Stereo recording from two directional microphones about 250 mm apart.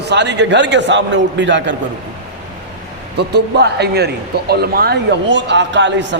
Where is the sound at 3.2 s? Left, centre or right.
Right.